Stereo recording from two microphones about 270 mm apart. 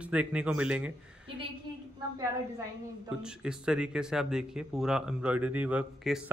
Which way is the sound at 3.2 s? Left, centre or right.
Centre.